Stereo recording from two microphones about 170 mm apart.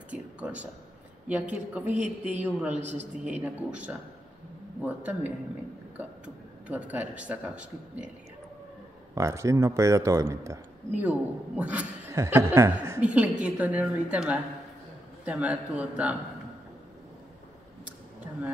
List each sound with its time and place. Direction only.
0.1 s a sound: 10° right (ahead or behind)
1.3 s a man's voice: 10° right (ahead or behind)
9.1 s a man's voice: 15° right (ahead or behind)